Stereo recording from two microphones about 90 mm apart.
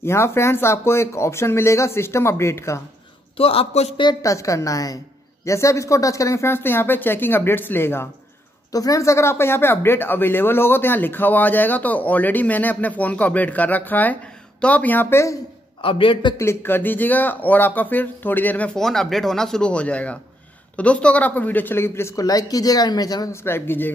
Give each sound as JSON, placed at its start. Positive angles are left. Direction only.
{"t": 0.0, "sound": "speech", "side_deg": 30}
{"t": 3.3, "sound": "a man's voice", "side_deg": 90}
{"t": 4.2, "sound": "a woman's voice", "side_deg": 35}
{"t": 8.7, "sound": "speech", "side_deg": 40}
{"t": 15.8, "sound": "a man's voice", "side_deg": 75}
{"t": 16.3, "sound": "speech", "side_deg": 25}
{"t": 18.8, "sound": "speech", "side_deg": 5}
{"t": 22.1, "sound": "speech", "side_deg": 40}
{"t": 23.3, "sound": "speech", "side_deg": 25}